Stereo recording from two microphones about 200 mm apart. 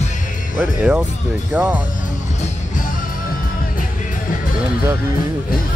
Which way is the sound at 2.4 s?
40° left (ahead or behind).